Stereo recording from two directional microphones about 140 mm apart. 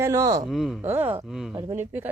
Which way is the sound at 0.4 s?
Centre (ahead or behind).